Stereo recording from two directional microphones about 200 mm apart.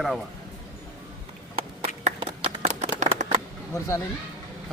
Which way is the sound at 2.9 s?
35° right (ahead or behind).